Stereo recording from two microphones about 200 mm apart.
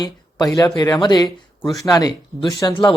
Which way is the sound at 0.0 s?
20° left (ahead or behind).